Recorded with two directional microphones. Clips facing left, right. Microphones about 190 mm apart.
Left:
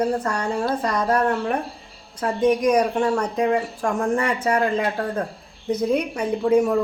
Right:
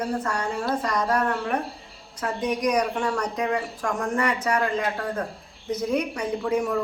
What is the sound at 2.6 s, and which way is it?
Speech, 25° left (ahead or behind).